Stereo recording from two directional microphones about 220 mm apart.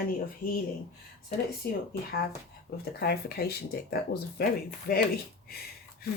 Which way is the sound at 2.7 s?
45° left (ahead or behind).